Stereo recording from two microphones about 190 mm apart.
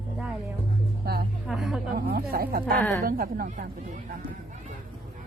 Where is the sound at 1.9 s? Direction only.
50° right (ahead or behind).